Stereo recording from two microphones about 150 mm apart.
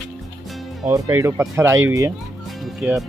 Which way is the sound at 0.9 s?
20° right (ahead or behind).